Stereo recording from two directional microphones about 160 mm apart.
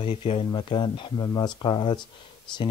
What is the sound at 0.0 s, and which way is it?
Speech, 35° left (ahead or behind).